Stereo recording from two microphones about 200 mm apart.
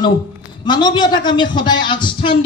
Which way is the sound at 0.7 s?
20° left (ahead or behind).